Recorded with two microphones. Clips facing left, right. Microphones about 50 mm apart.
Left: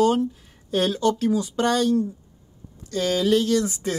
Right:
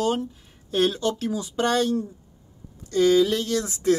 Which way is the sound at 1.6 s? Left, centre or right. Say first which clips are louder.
Left 1 dB; right.